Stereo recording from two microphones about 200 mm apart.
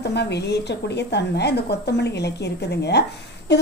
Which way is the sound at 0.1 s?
55° left (ahead or behind).